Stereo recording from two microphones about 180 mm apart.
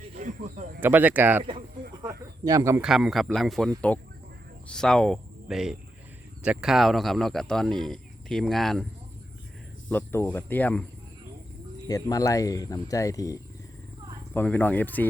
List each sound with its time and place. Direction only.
0.1 s snake: 45° right (ahead or behind)
0.8 s speech: 10° right (ahead or behind)
2.0 s a sound: 20° right (ahead or behind)
2.8 s speech: centre (ahead or behind)
9.9 s speech: 10° left (ahead or behind)
11.9 s speech: 20° left (ahead or behind)